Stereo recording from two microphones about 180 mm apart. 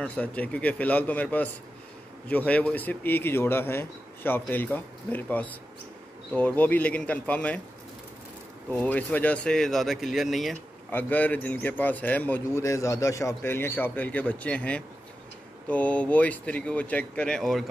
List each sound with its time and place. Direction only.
0.0 s speech: 5° left (ahead or behind)
8.6 s speech: 10° left (ahead or behind)
10.9 s speech: 10° left (ahead or behind)